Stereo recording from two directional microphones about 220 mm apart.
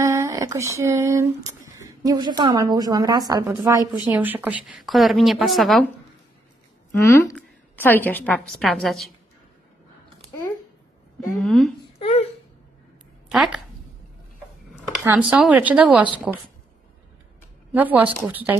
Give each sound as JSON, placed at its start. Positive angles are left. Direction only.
{"t": 0.0, "sound": "a woman's voice", "side_deg": -15}
{"t": 6.9, "sound": "a woman's voice", "side_deg": 10}
{"t": 11.3, "sound": "a woman's voice", "side_deg": 0}
{"t": 12.0, "sound": "a sound", "side_deg": 30}
{"t": 13.3, "sound": "a woman's voice", "side_deg": 0}
{"t": 15.0, "sound": "a woman's voice", "side_deg": -5}
{"t": 17.7, "sound": "a woman's voice", "side_deg": -10}